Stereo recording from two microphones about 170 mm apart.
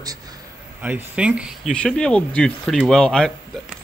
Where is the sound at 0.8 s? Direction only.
10° right (ahead or behind).